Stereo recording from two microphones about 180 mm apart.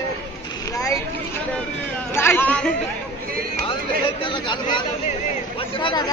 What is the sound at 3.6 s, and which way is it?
Speech, 30° left (ahead or behind).